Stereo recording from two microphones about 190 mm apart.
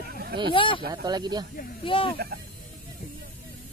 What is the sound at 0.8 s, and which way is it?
Speech, 20° right (ahead or behind).